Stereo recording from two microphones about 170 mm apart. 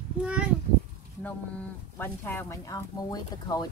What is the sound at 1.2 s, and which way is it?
Speech, 10° left (ahead or behind).